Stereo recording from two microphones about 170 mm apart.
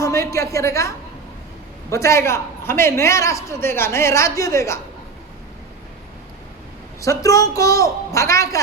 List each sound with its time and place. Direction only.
0.0 s a man's voice: 20° left (ahead or behind)
7.0 s a woman's voice: 20° left (ahead or behind)